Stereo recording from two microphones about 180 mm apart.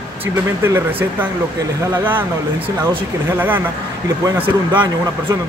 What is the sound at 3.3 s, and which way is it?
Speech, 10° right (ahead or behind).